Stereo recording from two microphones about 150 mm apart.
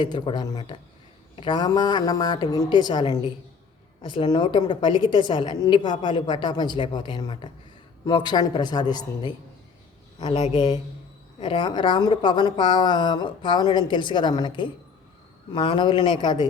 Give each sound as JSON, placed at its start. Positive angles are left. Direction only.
{"t": 0.0, "sound": "a woman's voice", "side_deg": 30}